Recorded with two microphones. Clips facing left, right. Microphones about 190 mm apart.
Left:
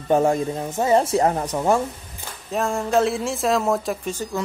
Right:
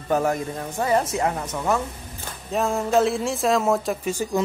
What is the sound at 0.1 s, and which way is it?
Speech, 25° left (ahead or behind).